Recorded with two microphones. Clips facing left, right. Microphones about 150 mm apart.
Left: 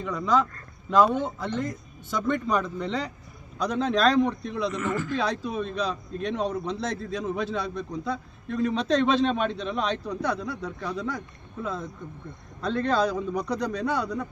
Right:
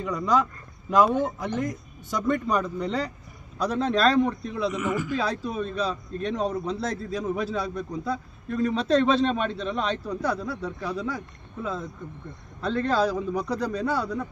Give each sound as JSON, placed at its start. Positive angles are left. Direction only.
{"t": 0.0, "sound": "a man's voice", "side_deg": -10}